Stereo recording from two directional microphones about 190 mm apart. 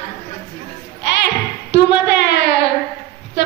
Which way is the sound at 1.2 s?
65° left (ahead or behind).